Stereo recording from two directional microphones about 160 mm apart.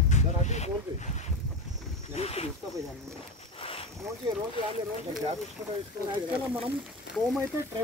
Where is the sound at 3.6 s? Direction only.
35° left (ahead or behind).